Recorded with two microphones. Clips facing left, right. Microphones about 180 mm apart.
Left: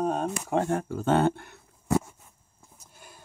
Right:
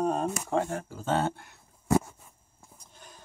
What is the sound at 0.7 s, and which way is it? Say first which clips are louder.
Speech: left 5 dB; 60° left (ahead or behind).